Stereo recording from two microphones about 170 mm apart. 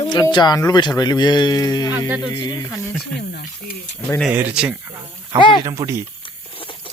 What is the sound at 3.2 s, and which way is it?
Speech, 70° left (ahead or behind).